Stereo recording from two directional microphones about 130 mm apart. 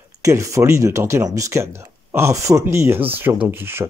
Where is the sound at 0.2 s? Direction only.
25° right (ahead or behind).